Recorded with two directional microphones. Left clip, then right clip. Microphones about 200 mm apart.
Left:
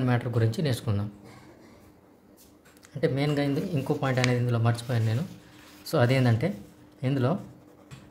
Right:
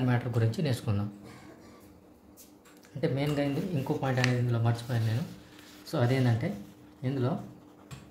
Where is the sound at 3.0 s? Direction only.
20° left (ahead or behind); by 7.2 s 50° left (ahead or behind).